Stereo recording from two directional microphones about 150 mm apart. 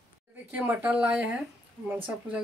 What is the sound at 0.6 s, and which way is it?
Speech, 10° right (ahead or behind).